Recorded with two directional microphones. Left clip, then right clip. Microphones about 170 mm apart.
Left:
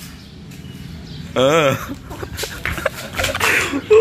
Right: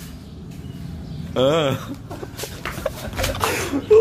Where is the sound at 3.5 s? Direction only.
Centre (ahead or behind).